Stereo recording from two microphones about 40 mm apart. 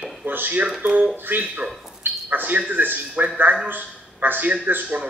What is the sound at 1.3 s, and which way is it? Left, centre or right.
A man's voice, right.